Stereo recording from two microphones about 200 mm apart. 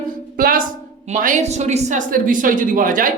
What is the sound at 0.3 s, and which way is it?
A woman's voice, 45° right (ahead or behind).